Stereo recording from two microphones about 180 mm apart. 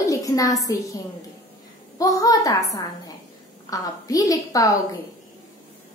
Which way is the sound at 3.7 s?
20° left (ahead or behind).